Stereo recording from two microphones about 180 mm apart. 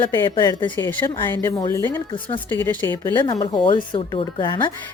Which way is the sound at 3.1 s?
25° left (ahead or behind).